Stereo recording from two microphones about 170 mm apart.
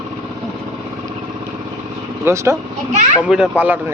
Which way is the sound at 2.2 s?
15° right (ahead or behind).